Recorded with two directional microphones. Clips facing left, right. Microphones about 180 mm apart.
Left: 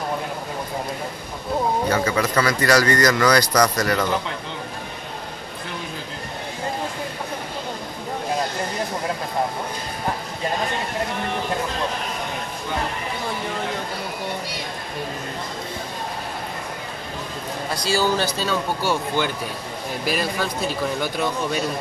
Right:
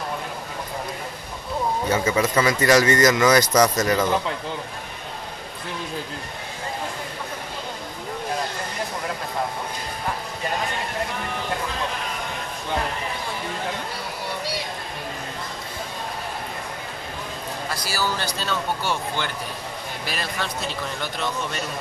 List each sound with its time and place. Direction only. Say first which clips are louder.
1.9 s speech: even; 25° right (ahead or behind)
17.8 s speech: left 7 dB; 20° left (ahead or behind)
18.4 s a man's voice: left 3 dB; 5° left (ahead or behind)